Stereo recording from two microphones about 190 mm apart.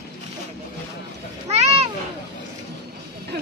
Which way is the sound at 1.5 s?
35° right (ahead or behind).